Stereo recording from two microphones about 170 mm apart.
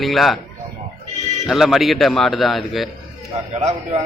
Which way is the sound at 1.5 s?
Centre (ahead or behind).